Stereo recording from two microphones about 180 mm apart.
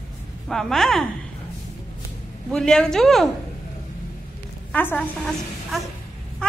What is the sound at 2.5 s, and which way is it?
Speech, 5° left (ahead or behind).